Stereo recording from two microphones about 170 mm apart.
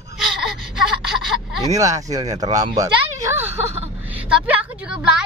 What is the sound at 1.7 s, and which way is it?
Speech, 20° right (ahead or behind).